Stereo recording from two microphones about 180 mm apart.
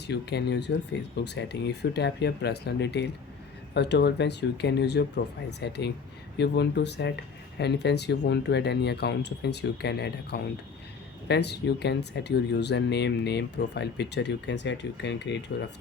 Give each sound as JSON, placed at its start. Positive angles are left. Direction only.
{"t": 0.1, "sound": "speech", "side_deg": 70}